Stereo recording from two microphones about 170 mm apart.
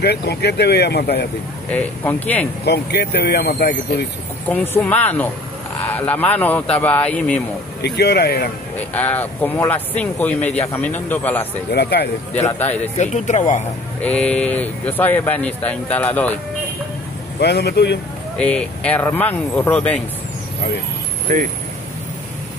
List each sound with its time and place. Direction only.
0.0 s speech: 75° left (ahead or behind)
1.7 s speech: 10° left (ahead or behind)
2.6 s speech: 75° left (ahead or behind)
4.5 s speech: 10° left (ahead or behind)
7.8 s speech: 75° left (ahead or behind)
8.7 s speech: 10° left (ahead or behind)
11.7 s speech: 75° left (ahead or behind)
12.4 s speech: 10° left (ahead or behind)
12.9 s speech: 45° left (ahead or behind)
14.0 s speech: 5° left (ahead or behind)
17.4 s speech: 75° left (ahead or behind)
18.4 s speech: 5° left (ahead or behind)
21.3 s speech: 45° right (ahead or behind)